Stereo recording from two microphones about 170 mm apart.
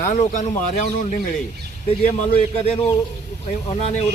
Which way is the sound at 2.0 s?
40° left (ahead or behind).